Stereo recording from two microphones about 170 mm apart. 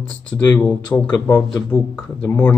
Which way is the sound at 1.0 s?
10° left (ahead or behind).